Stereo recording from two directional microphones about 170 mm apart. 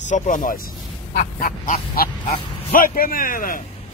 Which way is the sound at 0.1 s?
50° left (ahead or behind).